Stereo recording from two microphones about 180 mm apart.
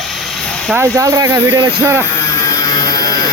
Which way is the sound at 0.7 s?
15° right (ahead or behind).